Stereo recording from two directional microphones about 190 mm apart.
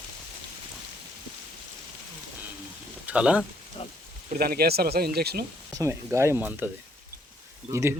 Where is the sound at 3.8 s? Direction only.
30° left (ahead or behind).